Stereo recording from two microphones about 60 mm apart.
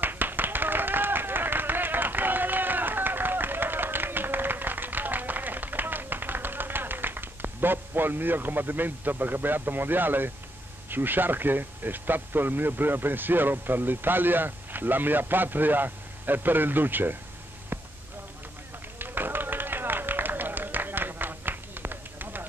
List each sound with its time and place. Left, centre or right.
0.0 s clapping: right
10.9 s speech: right
17.7 s a sound: right
18.9 s music: right